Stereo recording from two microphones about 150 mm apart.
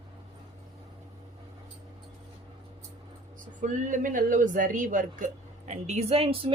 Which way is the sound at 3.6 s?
55° right (ahead or behind).